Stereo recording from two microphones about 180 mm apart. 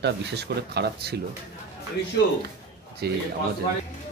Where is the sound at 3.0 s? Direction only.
65° right (ahead or behind).